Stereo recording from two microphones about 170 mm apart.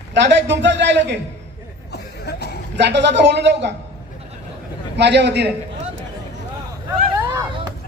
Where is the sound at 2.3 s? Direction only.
75° left (ahead or behind).